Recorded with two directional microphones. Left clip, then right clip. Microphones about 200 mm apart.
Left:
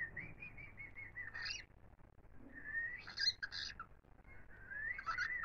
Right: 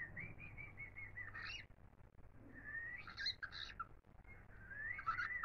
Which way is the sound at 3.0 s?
50° left (ahead or behind).